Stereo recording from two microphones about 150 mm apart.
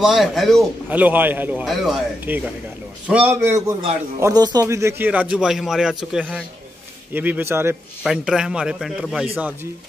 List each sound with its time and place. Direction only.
0.0 s a man's voice: centre (ahead or behind)
0.8 s speech: 10° right (ahead or behind)
8.0 s a man's voice: 5° right (ahead or behind)